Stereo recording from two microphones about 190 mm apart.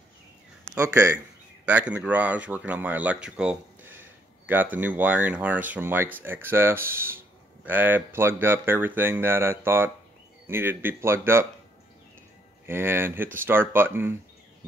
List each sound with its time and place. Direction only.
0.7 s speech: 15° right (ahead or behind)
12.6 s speech: 10° right (ahead or behind)